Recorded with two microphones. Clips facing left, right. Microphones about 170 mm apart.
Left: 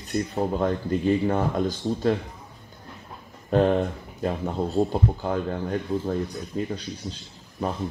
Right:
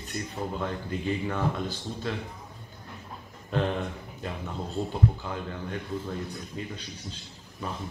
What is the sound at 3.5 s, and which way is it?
Speech, 45° left (ahead or behind).